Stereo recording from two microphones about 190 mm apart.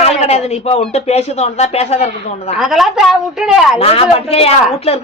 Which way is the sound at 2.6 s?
Centre (ahead or behind).